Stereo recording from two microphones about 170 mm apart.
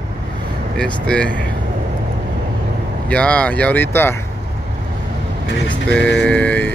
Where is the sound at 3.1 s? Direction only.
5° left (ahead or behind).